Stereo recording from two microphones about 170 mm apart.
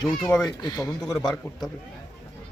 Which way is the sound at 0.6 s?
25° left (ahead or behind).